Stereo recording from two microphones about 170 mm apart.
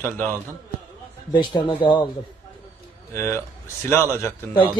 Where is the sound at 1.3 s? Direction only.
25° left (ahead or behind).